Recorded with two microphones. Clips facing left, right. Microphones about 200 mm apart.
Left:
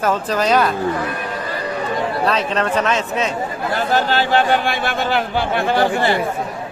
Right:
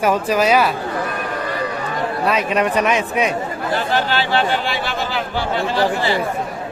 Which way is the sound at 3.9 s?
45° left (ahead or behind).